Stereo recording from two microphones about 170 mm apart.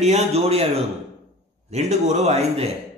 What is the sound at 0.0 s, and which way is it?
Speech, 40° right (ahead or behind).